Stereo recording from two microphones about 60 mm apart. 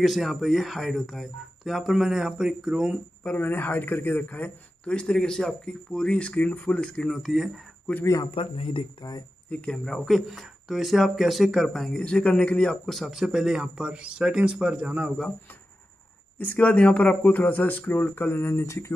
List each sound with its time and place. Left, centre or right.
0.0 s speech: centre
3.3 s a man's voice: left; by 5.1 s centre
5.1 s speech: centre
9.0 s speech: left
9.5 s speech: centre
9.8 s speech: centre
12.0 s a man's voice: centre
16.3 s speech: left